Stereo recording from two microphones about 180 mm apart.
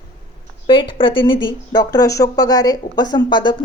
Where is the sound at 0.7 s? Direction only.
30° left (ahead or behind).